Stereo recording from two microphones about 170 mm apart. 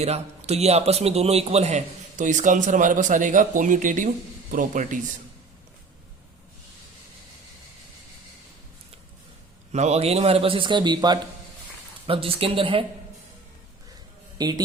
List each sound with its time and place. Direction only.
0.0 s a man's voice: 40° right (ahead or behind)
9.7 s a man's voice: 40° right (ahead or behind)
14.3 s a man's voice: 25° right (ahead or behind)